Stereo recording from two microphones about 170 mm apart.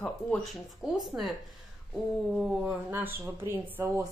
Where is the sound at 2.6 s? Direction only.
10° right (ahead or behind).